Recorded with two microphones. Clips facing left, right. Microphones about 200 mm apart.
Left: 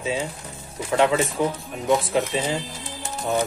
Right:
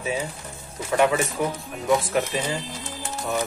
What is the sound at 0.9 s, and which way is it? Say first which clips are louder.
Speech: left 1 dB; 20° left (ahead or behind).